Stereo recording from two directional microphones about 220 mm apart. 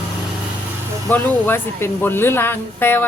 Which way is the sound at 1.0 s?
10° left (ahead or behind).